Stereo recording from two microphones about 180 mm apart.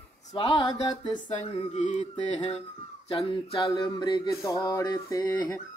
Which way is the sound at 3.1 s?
30° left (ahead or behind).